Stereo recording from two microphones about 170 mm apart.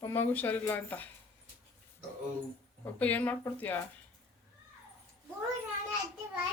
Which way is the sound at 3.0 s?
10° left (ahead or behind).